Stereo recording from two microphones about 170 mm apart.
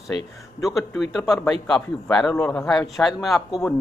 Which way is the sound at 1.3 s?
Centre (ahead or behind).